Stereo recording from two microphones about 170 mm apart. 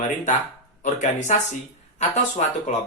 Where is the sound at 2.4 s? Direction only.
45° left (ahead or behind).